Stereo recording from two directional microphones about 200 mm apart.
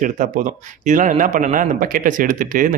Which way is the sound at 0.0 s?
40° right (ahead or behind).